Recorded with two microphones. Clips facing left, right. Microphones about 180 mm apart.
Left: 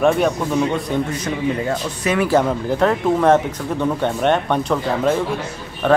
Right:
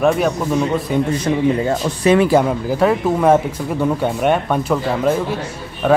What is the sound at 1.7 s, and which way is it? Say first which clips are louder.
Speech: right 6 dB; 25° right (ahead or behind).